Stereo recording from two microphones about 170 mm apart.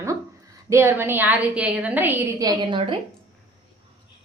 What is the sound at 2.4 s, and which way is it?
Speech, 30° right (ahead or behind).